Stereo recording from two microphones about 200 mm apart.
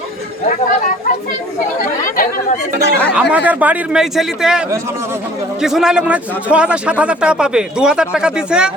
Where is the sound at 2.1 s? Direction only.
45° left (ahead or behind).